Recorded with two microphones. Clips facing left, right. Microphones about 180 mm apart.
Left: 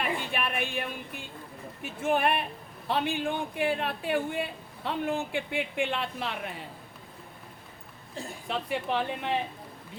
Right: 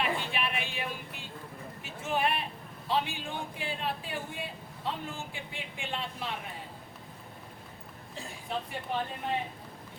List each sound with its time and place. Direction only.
0.0 s a sound: 50° left (ahead or behind)
1.8 s a man's voice: 55° left (ahead or behind)
8.4 s speech: 80° left